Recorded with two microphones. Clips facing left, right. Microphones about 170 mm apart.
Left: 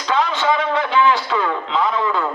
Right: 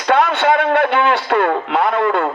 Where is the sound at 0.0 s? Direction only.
60° right (ahead or behind).